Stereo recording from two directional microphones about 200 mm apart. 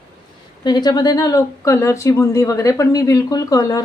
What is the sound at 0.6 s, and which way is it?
A woman's voice, 20° left (ahead or behind).